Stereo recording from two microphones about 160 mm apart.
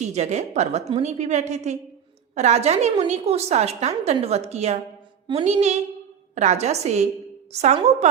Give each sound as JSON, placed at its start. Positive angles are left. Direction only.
{"t": 0.0, "sound": "a woman's voice", "side_deg": -45}
{"t": 5.3, "sound": "music", "side_deg": -40}
{"t": 6.3, "sound": "a woman's voice", "side_deg": -45}